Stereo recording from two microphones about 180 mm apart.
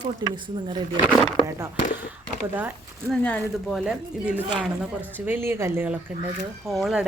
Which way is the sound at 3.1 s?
5° left (ahead or behind).